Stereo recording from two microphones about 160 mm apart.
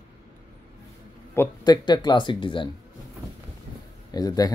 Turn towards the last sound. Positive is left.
turn(degrees=25)  # may be behind; listen again after turning